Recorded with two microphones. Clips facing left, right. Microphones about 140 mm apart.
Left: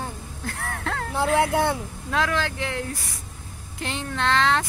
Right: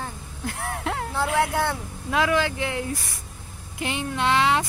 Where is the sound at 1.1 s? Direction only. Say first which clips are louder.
Left 3 dB; 15° left (ahead or behind).